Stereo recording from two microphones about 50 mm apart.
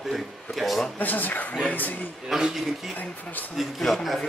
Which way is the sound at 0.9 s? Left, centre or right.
Left.